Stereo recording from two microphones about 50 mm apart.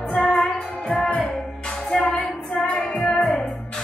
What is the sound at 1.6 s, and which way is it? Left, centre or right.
Music, centre.